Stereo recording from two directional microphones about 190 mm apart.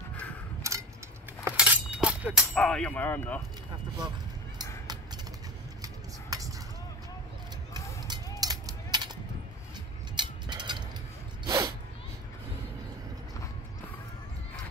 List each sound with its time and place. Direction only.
0.6 s a sound: 15° right (ahead or behind)
2.5 s speech: 5° left (ahead or behind)
4.6 s fowl: 20° right (ahead or behind)
8.1 s a sound: 20° right (ahead or behind)
10.1 s mechanisms: 25° right (ahead or behind)
11.4 s sneeze: 20° right (ahead or behind)